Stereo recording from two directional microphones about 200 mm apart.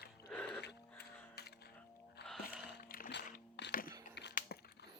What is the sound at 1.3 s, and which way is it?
Music, 55° left (ahead or behind).